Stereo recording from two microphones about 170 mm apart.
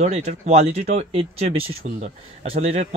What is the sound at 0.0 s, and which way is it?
Speech, 40° right (ahead or behind).